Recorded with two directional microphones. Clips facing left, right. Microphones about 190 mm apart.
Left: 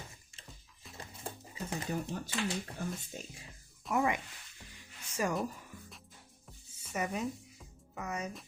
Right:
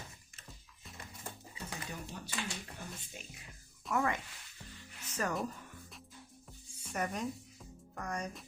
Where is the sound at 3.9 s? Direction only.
15° left (ahead or behind).